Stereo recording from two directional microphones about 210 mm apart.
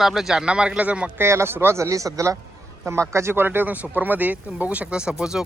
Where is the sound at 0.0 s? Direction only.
Centre (ahead or behind).